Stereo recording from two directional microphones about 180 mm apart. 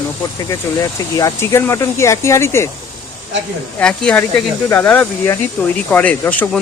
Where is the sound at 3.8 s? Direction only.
5° left (ahead or behind).